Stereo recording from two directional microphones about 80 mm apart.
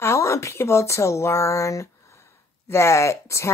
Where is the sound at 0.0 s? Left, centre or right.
Left.